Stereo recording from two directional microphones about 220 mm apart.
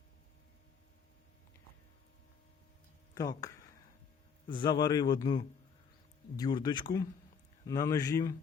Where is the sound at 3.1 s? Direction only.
15° left (ahead or behind).